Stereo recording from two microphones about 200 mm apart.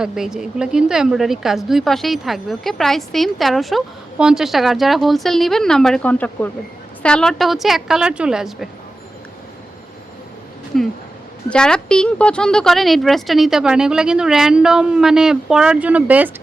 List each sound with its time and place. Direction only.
0.0 s a woman's voice: 5° right (ahead or behind)
10.7 s a sound: centre (ahead or behind)
11.4 s a woman's voice: 5° left (ahead or behind)